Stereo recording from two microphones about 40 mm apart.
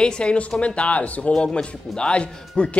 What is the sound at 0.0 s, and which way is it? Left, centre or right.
Speech, left.